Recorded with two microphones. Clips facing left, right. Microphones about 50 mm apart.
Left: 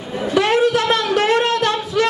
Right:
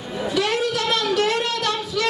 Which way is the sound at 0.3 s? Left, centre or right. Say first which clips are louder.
Left 7 dB; left.